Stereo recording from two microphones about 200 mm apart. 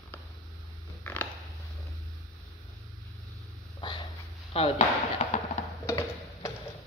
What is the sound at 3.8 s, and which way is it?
Dog, 20° left (ahead or behind).